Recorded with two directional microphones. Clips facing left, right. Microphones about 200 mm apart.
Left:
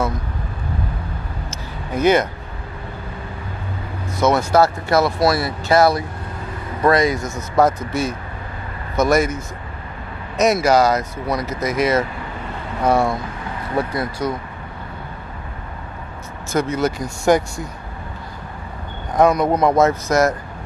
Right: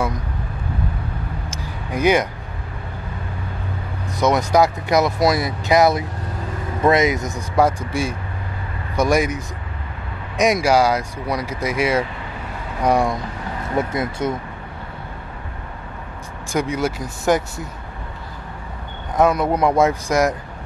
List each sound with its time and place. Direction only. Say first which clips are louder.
1.9 s speech: left 1 dB; 10° right (ahead or behind)
4.2 s speech: left 1 dB; 15° right (ahead or behind)
16.5 s speech: left 2 dB; 10° right (ahead or behind)
19.1 s speech: left 2 dB; 5° right (ahead or behind)